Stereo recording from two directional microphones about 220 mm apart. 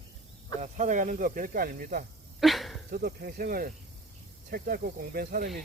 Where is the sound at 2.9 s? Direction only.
45° right (ahead or behind).